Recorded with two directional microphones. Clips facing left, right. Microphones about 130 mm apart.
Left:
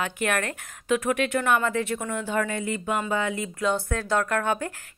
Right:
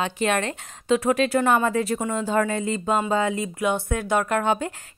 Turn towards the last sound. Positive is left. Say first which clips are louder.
# right 3 dB
turn(degrees=-20)  # may be behind; listen again after turning